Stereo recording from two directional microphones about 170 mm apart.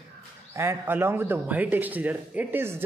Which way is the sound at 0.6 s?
15° right (ahead or behind).